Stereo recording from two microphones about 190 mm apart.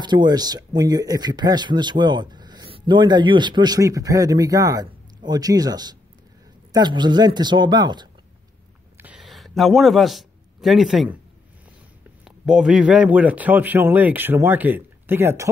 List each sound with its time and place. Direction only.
0.0 s speech: 25° right (ahead or behind)
8.9 s a sound: 5° right (ahead or behind)
12.3 s speech: 5° right (ahead or behind)